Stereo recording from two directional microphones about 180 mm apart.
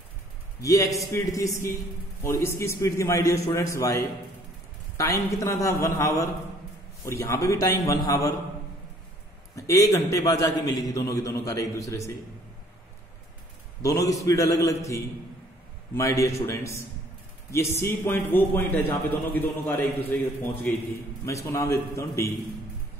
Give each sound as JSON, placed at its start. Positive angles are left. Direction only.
{"t": 0.6, "sound": "a man's voice", "side_deg": 20}
{"t": 9.6, "sound": "a man's voice", "side_deg": 20}
{"t": 13.8, "sound": "a man's voice", "side_deg": 20}